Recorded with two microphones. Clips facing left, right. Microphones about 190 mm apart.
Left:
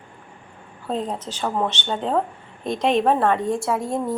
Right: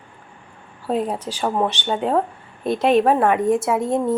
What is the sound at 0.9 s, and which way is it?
A woman's voice, 10° right (ahead or behind).